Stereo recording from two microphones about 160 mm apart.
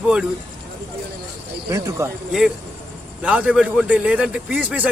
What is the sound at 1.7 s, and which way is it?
Speech, 20° right (ahead or behind).